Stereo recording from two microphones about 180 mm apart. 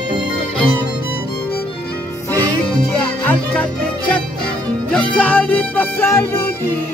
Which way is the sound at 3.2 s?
10° left (ahead or behind).